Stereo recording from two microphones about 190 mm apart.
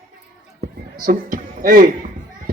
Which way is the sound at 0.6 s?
45° right (ahead or behind).